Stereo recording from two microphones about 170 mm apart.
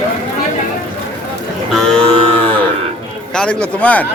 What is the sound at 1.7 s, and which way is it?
Music, 5° left (ahead or behind).